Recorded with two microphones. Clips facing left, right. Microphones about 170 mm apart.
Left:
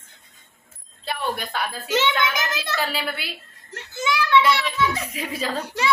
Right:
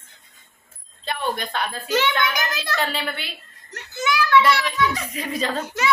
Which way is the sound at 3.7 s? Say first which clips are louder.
Right 1 dB; 25° left (ahead or behind).